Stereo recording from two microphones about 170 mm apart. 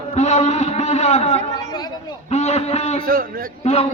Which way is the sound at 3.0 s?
55° right (ahead or behind).